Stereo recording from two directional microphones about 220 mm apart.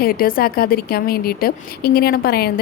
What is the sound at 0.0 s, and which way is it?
A woman's voice, 40° left (ahead or behind).